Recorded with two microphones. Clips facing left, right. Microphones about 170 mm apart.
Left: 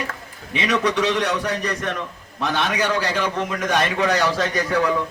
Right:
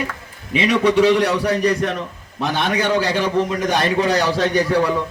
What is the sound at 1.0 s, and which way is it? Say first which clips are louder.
Speech: right 7 dB; 10° right (ahead or behind).